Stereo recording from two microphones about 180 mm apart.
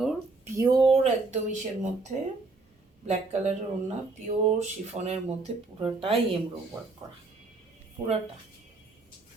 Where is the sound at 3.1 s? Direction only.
40° right (ahead or behind).